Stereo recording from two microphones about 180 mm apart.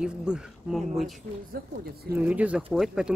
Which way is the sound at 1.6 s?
55° right (ahead or behind).